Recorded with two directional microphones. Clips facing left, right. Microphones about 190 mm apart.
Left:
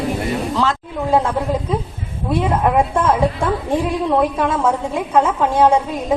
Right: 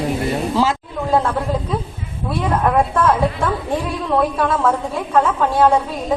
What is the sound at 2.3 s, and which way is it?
Speech, 15° left (ahead or behind).